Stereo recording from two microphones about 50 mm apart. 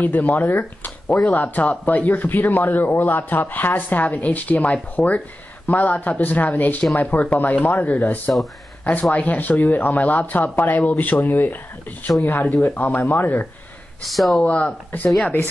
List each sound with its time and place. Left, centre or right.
0.0 s a man's voice: left
14.0 s speech: centre
14.4 s speech: left